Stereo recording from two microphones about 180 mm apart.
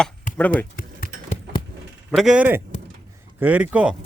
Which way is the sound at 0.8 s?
50° left (ahead or behind).